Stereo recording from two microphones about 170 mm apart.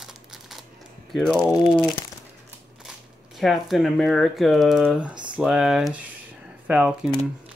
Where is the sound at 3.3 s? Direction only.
Centre (ahead or behind).